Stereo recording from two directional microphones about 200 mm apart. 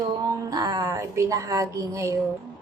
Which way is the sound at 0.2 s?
20° right (ahead or behind).